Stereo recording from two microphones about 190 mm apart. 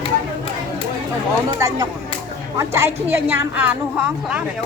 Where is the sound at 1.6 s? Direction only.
15° right (ahead or behind).